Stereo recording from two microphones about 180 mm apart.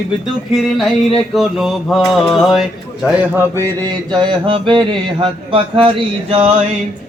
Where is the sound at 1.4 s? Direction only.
Centre (ahead or behind).